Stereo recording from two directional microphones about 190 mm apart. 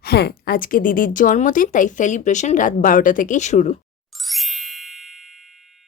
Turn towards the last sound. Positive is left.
turn(degrees=0)  # may be behind; listen again after turning